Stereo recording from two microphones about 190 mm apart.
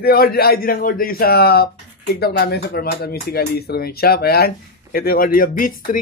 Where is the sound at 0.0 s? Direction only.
50° left (ahead or behind).